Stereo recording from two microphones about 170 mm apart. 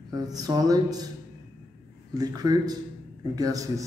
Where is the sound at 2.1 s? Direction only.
20° right (ahead or behind).